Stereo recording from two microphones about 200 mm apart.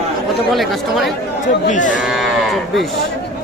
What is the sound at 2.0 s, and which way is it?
Moo, centre (ahead or behind).